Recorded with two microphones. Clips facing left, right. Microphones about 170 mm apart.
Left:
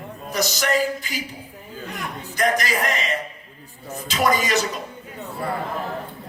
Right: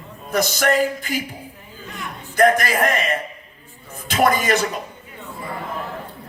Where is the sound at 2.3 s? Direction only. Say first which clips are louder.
Right 6 dB; 55° right (ahead or behind).